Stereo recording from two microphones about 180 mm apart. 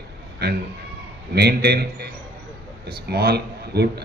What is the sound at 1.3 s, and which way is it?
Speech, 60° right (ahead or behind).